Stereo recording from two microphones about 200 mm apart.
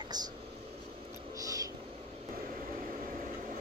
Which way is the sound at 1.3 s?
15° right (ahead or behind).